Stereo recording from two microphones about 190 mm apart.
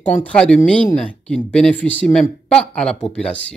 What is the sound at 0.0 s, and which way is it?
Speech, 5° left (ahead or behind).